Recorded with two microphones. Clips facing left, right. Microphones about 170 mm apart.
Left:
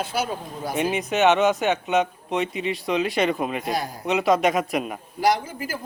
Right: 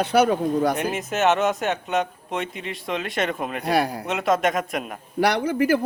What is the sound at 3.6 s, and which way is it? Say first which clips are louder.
Speech: right 5 dB; 70° right (ahead or behind).